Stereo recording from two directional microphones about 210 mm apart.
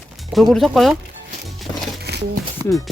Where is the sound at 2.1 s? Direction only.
50° right (ahead or behind).